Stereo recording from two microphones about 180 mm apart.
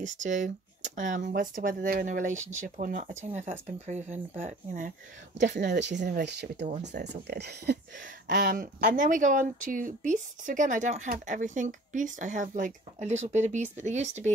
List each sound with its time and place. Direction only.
0.0 s speech: 40° right (ahead or behind)
6.0 s speech: 60° right (ahead or behind)
8.3 s speech: 50° right (ahead or behind)